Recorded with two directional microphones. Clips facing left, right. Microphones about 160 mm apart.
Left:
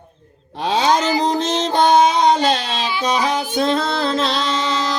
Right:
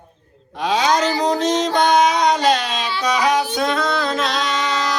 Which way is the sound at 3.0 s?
30° left (ahead or behind).